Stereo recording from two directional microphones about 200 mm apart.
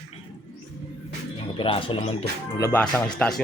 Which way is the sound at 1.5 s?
25° left (ahead or behind).